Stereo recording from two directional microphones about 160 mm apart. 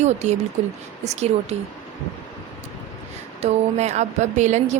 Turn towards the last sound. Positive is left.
turn(degrees=-45)  # may be behind; listen again after turning